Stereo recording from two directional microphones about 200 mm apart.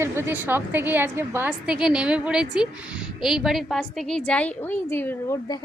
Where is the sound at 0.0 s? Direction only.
10° right (ahead or behind).